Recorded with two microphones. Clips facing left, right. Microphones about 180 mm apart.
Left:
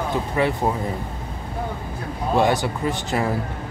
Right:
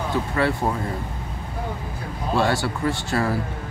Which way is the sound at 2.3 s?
20° left (ahead or behind).